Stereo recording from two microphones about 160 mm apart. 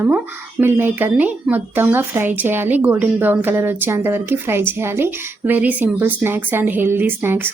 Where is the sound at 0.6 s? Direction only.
15° right (ahead or behind).